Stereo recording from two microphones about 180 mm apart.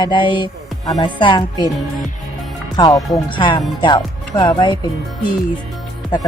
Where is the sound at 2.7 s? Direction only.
20° left (ahead or behind).